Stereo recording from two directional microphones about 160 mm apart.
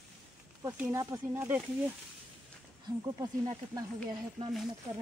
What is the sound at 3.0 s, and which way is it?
Speech, 25° right (ahead or behind).